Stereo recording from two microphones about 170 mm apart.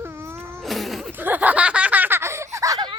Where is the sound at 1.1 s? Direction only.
10° right (ahead or behind).